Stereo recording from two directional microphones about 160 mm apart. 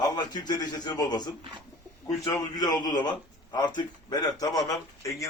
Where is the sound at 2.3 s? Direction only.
25° left (ahead or behind).